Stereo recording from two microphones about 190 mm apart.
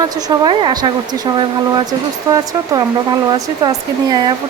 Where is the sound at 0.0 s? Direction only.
20° right (ahead or behind).